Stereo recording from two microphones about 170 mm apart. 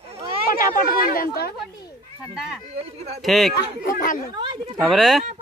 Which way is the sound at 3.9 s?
55° left (ahead or behind).